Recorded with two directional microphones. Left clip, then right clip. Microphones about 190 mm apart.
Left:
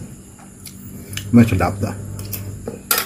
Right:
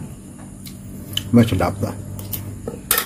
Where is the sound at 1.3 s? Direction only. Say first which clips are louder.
Left 2 dB; 10° right (ahead or behind).